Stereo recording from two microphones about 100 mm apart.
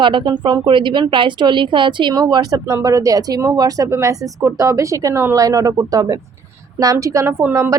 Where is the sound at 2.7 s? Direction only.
30° right (ahead or behind).